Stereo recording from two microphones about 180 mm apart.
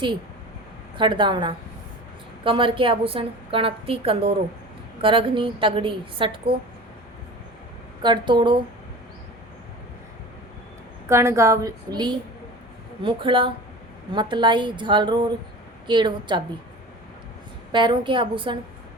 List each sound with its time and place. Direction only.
0.9 s a woman's voice: 25° right (ahead or behind)
8.0 s a woman's voice: 25° right (ahead or behind)
11.1 s a woman's voice: 15° right (ahead or behind)
17.7 s a woman's voice: 25° right (ahead or behind)